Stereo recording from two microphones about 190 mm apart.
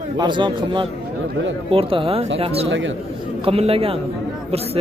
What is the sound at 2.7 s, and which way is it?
Speech, 85° right.